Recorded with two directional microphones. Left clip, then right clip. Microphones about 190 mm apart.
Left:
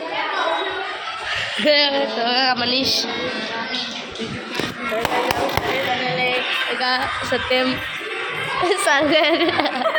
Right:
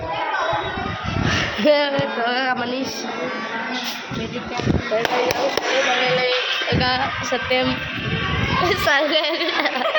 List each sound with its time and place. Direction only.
1.6 s a woman's voice: 15° right (ahead or behind)
2.0 s music: centre (ahead or behind)
6.7 s music: 5° right (ahead or behind)
8.6 s a woman's voice: 10° left (ahead or behind)
9.0 s a woman's voice: 40° left (ahead or behind)